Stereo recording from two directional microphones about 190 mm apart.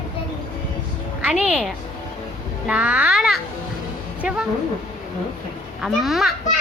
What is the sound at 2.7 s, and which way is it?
A woman's voice, 5° right (ahead or behind).